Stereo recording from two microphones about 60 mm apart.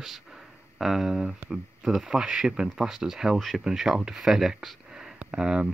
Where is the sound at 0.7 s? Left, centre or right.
Centre.